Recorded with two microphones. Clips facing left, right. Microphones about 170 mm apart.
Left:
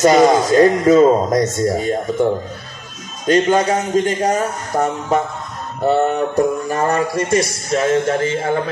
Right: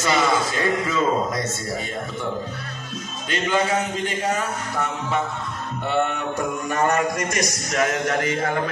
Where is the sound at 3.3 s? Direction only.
40° left (ahead or behind).